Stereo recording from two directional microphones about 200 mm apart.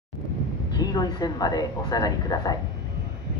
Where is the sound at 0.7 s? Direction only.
20° left (ahead or behind).